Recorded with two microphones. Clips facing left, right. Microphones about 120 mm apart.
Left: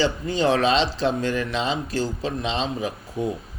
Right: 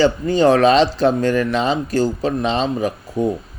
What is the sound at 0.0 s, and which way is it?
Speech, 50° right (ahead or behind).